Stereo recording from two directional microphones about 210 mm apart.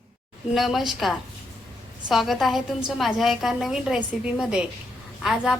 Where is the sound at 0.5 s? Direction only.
Centre (ahead or behind).